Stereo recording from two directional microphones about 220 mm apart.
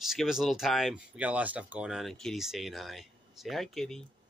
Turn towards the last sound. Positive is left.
turn(degrees=0)  # may be behind; listen again after turning